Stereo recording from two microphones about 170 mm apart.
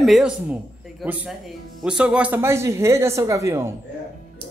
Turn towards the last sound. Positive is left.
turn(degrees=-15)  # may be behind; listen again after turning